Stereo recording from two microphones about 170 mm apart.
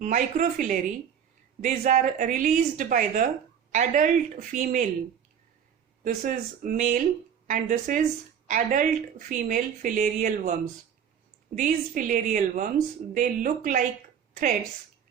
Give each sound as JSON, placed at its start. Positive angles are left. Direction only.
{"t": 0.0, "sound": "speech", "side_deg": -50}
{"t": 6.0, "sound": "speech", "side_deg": -55}
{"t": 11.5, "sound": "speech", "side_deg": -50}